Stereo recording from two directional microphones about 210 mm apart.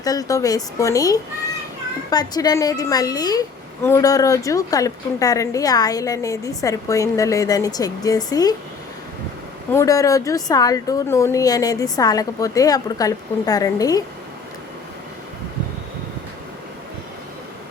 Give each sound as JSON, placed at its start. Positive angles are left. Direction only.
{"t": 0.0, "sound": "a woman's voice", "side_deg": 15}
{"t": 9.7, "sound": "a woman's voice", "side_deg": 15}